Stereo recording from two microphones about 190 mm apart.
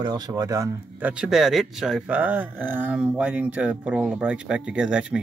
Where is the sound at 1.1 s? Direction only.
5° right (ahead or behind).